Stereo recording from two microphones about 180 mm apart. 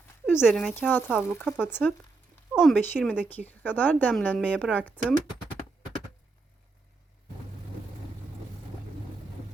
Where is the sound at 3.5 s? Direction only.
10° left (ahead or behind).